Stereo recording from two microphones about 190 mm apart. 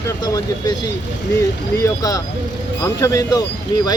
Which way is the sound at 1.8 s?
20° left (ahead or behind).